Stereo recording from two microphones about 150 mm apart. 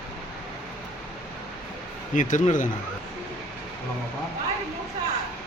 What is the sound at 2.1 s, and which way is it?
Speech, 60° left (ahead or behind).